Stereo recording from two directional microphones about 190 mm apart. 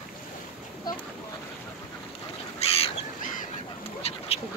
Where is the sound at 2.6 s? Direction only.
30° left (ahead or behind).